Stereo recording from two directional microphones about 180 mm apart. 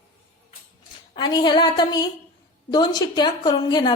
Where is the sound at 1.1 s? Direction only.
25° left (ahead or behind).